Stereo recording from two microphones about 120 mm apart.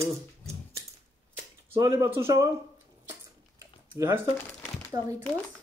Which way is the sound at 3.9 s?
20° right (ahead or behind).